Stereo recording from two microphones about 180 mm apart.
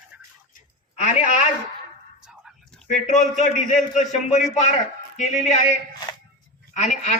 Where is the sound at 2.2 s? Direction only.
Centre (ahead or behind).